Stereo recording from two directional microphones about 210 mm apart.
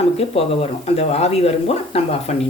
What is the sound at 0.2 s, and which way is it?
Speech, 30° left (ahead or behind).